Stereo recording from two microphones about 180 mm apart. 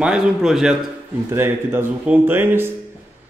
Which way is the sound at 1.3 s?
15° right (ahead or behind).